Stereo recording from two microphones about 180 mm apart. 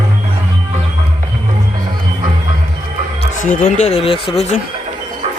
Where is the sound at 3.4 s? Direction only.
45° left (ahead or behind); by 4.4 s 30° left (ahead or behind).